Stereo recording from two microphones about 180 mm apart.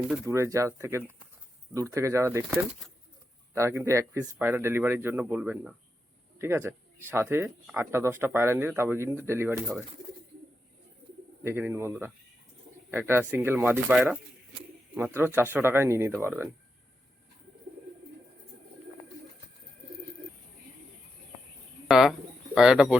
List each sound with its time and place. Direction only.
0.3 s speech: 15° right (ahead or behind)
3.5 s speech: 15° right (ahead or behind)
11.4 s speech: 10° right (ahead or behind)
21.8 s speech: centre (ahead or behind)